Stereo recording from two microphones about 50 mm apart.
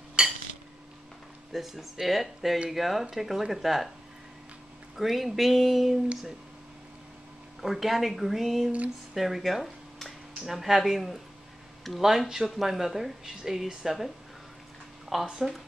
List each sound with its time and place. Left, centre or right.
0.2 s a sound: centre
1.5 s speech: centre
4.9 s speech: centre
7.6 s speech: centre
15.2 s speech: centre